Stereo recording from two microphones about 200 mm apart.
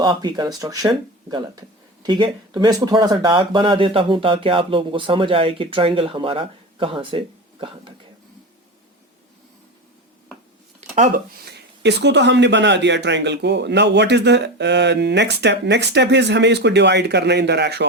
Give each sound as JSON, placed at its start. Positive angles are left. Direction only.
{"t": 0.0, "sound": "speech", "side_deg": -20}
{"t": 10.8, "sound": "a sound", "side_deg": -35}
{"t": 11.4, "sound": "speech", "side_deg": -55}